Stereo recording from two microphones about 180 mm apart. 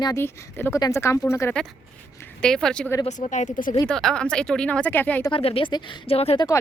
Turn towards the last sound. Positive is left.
turn(degrees=35)  # may be behind; listen again after turning